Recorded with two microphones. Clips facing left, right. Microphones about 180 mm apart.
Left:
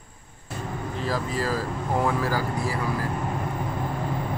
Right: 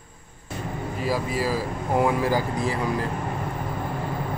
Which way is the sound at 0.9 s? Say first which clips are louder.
Right 2 dB; 10° right (ahead or behind).